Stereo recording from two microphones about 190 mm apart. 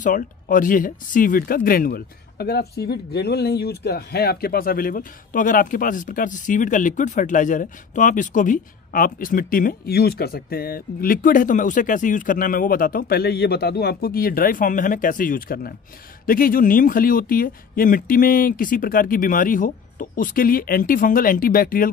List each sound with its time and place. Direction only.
0.0 s speech: 45° left (ahead or behind)